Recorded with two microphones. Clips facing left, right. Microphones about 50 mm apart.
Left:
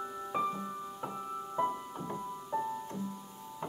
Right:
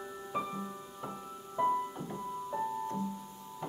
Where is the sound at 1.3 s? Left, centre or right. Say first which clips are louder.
Left 6 dB; left.